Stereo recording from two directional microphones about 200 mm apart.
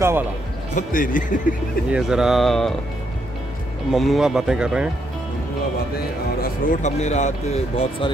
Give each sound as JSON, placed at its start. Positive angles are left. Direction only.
{"t": 0.7, "sound": "speech", "side_deg": 40}
{"t": 1.9, "sound": "speech", "side_deg": -5}
{"t": 3.9, "sound": "speech", "side_deg": 0}
{"t": 6.4, "sound": "speech", "side_deg": 40}